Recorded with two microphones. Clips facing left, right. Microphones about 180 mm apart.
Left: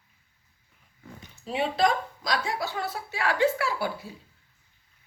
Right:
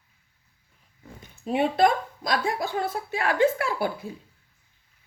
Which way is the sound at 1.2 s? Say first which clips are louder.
Right 5 dB; 50° right (ahead or behind).